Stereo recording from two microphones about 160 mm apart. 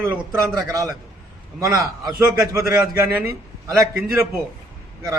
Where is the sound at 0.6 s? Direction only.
20° right (ahead or behind).